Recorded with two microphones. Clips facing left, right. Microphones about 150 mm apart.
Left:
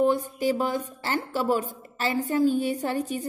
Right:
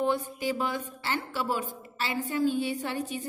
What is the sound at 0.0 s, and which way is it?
Speech, 40° left (ahead or behind).